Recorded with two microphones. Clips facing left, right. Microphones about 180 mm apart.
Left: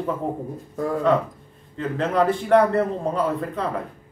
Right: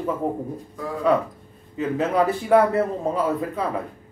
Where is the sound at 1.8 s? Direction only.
5° right (ahead or behind).